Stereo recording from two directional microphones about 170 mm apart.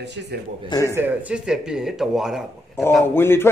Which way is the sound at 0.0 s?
85° right.